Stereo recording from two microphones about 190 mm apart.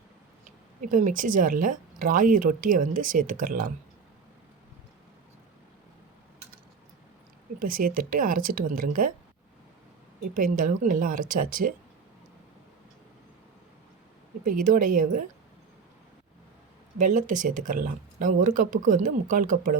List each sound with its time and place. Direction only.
0.4 s speech: 45° right (ahead or behind)
7.6 s speech: 50° right (ahead or behind)
10.3 s speech: 45° right (ahead or behind)
14.5 s speech: 45° right (ahead or behind)
17.1 s speech: 45° right (ahead or behind)